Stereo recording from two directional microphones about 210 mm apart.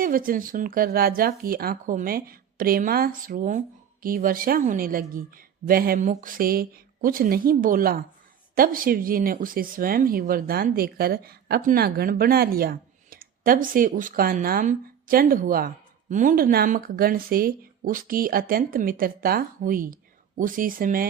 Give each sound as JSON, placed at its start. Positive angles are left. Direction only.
{"t": 0.0, "sound": "speech", "side_deg": -40}